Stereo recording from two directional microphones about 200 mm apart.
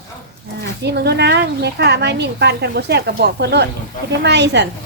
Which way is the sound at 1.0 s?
55° right (ahead or behind).